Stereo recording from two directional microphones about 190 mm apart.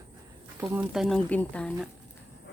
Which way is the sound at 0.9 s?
Centre (ahead or behind).